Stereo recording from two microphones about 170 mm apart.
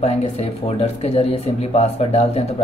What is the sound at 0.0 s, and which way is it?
Speech, 35° left (ahead or behind).